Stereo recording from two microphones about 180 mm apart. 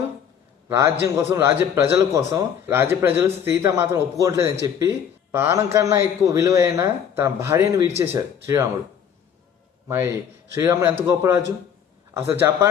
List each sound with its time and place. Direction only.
0.7 s a man's voice: 20° right (ahead or behind)
9.9 s a man's voice: 15° right (ahead or behind)